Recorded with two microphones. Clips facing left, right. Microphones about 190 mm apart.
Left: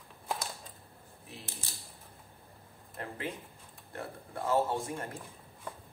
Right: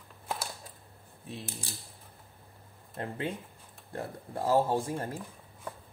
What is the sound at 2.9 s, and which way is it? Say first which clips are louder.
Speech: right 4 dB; 30° right (ahead or behind).